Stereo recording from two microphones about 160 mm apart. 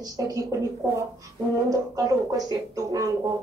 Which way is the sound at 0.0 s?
20° right (ahead or behind).